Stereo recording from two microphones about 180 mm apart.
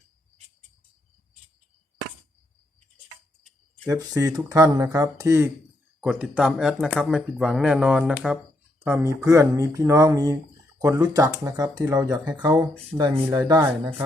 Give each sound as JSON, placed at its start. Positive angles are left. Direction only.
{"t": 3.8, "sound": "speech", "side_deg": -20}
{"t": 6.0, "sound": "speech", "side_deg": -5}